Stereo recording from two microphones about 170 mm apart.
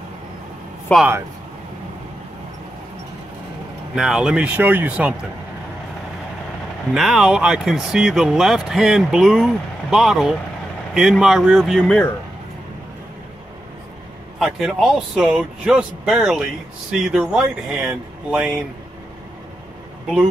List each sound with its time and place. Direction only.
0.9 s speech: 5° left (ahead or behind)
3.9 s speech: 5° right (ahead or behind)
6.9 s speech: 5° right (ahead or behind)
14.4 s speech: centre (ahead or behind)